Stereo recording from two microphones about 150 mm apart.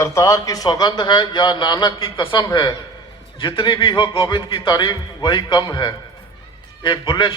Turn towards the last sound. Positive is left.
turn(degrees=30)  # may be behind; listen again after turning